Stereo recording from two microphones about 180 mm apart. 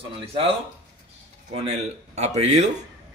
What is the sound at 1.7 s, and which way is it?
Speech, 35° right (ahead or behind).